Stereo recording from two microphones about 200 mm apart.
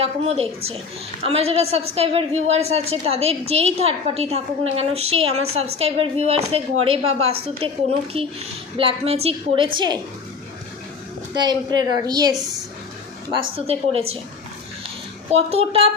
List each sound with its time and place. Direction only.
0.0 s a woman's voice: 30° right (ahead or behind)
11.3 s a woman's voice: 20° right (ahead or behind)
15.3 s a woman's voice: 30° right (ahead or behind)